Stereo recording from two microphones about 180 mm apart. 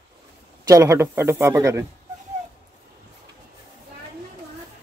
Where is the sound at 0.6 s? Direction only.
15° right (ahead or behind).